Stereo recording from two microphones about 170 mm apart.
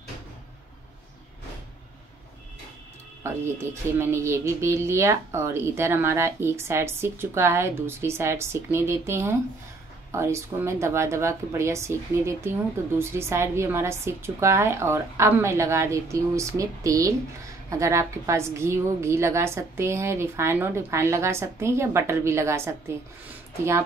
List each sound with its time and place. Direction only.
3.2 s a woman's voice: 15° right (ahead or behind)